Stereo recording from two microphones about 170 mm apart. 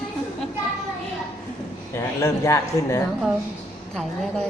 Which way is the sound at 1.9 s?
20° left (ahead or behind).